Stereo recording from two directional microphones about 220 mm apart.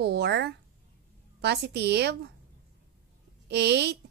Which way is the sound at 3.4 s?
50° right (ahead or behind).